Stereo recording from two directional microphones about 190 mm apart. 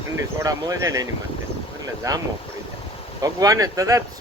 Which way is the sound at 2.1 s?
15° right (ahead or behind).